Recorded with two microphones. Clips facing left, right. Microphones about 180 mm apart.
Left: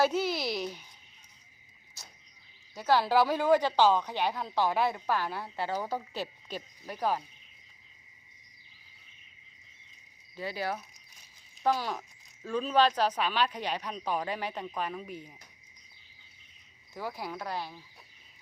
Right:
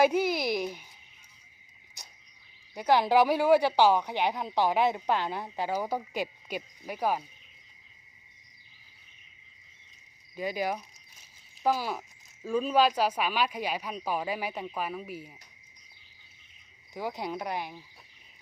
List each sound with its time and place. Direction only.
0.0 s speech: 10° right (ahead or behind)
2.0 s cricket: 15° right (ahead or behind)
2.7 s speech: 15° right (ahead or behind)
10.3 s speech: 15° right (ahead or behind)
16.9 s speech: 20° right (ahead or behind)